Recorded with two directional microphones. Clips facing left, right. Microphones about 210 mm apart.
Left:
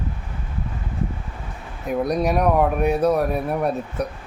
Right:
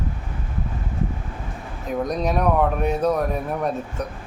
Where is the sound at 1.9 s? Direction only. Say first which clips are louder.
Left 3 dB; 10° left (ahead or behind).